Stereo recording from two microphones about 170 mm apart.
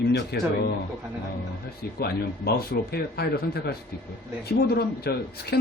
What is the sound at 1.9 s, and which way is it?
A man's voice, 65° left (ahead or behind).